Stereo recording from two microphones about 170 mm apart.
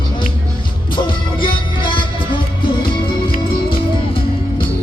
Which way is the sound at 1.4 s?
30° left (ahead or behind).